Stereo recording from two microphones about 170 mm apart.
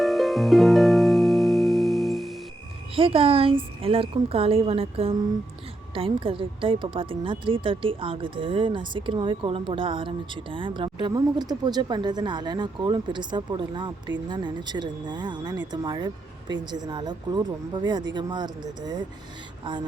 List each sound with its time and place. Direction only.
0.0 s harp: centre (ahead or behind)
2.9 s speech: 30° right (ahead or behind)